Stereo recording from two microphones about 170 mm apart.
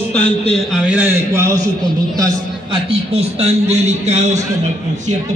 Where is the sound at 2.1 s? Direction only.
20° right (ahead or behind).